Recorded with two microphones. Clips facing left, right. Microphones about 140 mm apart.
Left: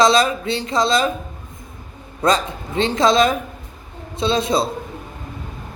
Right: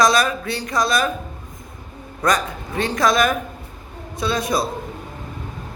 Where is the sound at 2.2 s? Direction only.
25° left (ahead or behind).